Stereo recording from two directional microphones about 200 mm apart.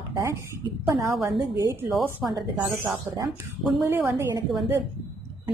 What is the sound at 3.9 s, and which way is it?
Speech, 15° right (ahead or behind).